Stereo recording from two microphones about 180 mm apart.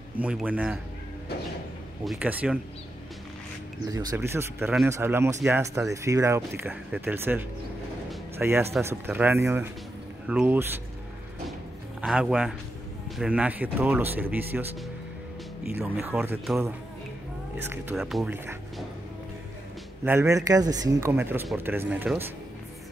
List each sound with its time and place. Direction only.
0.2 s speech: 5° right (ahead or behind)
2.0 s speech: 5° right (ahead or behind)
3.9 s speech: 20° right (ahead or behind)
12.0 s speech: 5° right (ahead or behind)
16.0 s speech: 10° right (ahead or behind)
17.9 s speech: centre (ahead or behind)
20.1 s speech: 15° right (ahead or behind)